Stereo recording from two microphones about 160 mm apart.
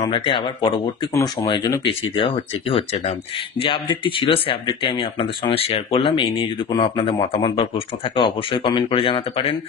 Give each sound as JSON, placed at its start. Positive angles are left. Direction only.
{"t": 0.0, "sound": "speech", "side_deg": 30}